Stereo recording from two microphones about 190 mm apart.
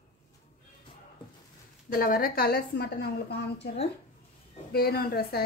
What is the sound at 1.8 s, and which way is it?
Speech, 50° left (ahead or behind).